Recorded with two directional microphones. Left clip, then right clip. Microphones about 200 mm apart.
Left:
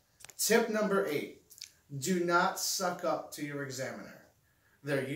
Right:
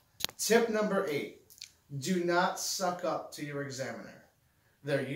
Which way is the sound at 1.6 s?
10° right (ahead or behind).